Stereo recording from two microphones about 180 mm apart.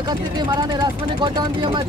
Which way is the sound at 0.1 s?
25° right (ahead or behind).